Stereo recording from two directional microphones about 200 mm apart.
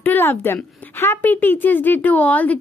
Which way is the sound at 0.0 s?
10° left (ahead or behind).